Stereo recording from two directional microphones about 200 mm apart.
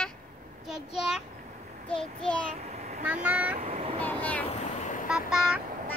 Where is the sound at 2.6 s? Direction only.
35° right (ahead or behind).